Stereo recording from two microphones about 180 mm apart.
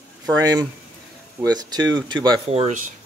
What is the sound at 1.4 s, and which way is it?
Speech, 20° right (ahead or behind).